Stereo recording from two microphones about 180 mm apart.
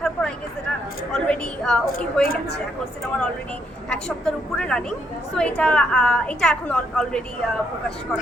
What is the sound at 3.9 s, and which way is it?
A woman's voice, 5° left (ahead or behind).